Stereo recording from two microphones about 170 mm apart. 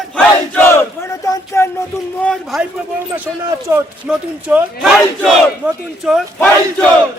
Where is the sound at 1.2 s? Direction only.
20° left (ahead or behind).